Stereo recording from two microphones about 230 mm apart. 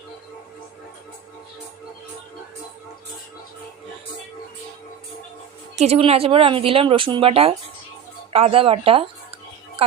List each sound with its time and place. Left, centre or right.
5.7 s speech: right